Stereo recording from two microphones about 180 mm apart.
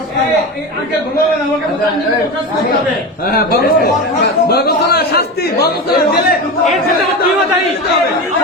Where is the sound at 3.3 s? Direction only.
55° left (ahead or behind).